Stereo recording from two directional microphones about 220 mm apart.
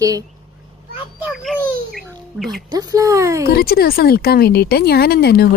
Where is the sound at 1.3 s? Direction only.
Centre (ahead or behind).